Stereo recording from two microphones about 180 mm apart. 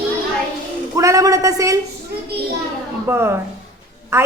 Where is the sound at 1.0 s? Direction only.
15° right (ahead or behind).